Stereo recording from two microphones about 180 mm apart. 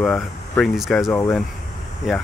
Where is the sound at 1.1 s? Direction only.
10° left (ahead or behind).